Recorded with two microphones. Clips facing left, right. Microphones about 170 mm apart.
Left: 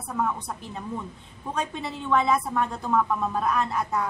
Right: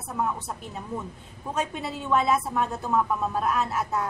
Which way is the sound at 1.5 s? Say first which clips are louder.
Right 1 dB; 10° right (ahead or behind).